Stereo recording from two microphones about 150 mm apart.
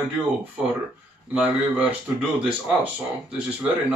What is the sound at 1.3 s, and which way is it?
Speech, 10° right (ahead or behind).